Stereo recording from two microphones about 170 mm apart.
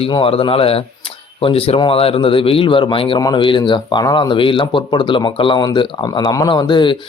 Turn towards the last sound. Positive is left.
turn(degrees=30)  # may be behind; listen again after turning